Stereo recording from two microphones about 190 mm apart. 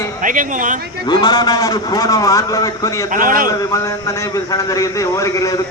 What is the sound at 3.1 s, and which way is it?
Speech, 45° right (ahead or behind).